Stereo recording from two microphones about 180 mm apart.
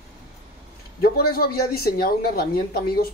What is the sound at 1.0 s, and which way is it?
Speech, 55° left (ahead or behind).